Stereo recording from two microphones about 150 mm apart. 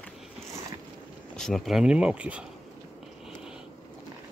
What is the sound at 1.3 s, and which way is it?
Speech, 5° left (ahead or behind).